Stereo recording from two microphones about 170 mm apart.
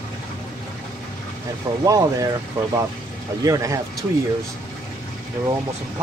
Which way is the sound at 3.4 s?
20° right (ahead or behind).